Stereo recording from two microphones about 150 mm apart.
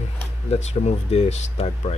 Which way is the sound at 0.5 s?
50° left (ahead or behind).